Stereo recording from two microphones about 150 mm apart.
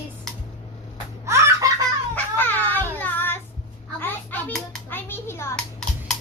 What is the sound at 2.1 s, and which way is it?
Baby cry, 15° left (ahead or behind).